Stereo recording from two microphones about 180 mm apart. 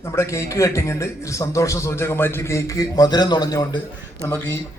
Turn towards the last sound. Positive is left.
turn(degrees=15)  # may be behind; listen again after turning